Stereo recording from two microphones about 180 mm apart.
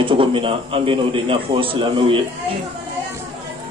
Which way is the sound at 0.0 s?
30° right (ahead or behind).